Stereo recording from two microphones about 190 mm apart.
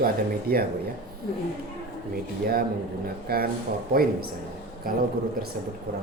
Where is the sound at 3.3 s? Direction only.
55° right (ahead or behind).